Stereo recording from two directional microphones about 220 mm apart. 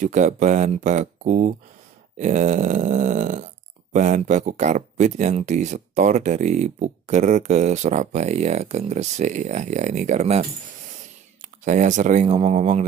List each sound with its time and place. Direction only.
0.0 s speech: 35° right (ahead or behind)
11.6 s speech: 35° right (ahead or behind)